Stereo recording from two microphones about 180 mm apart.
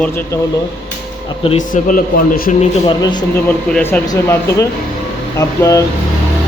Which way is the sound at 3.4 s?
10° left (ahead or behind).